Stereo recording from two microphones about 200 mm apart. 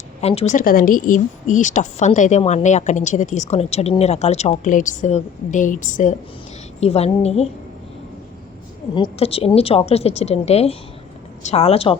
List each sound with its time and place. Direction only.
0.2 s speech: 30° left (ahead or behind)
9.0 s speech: 30° left (ahead or behind)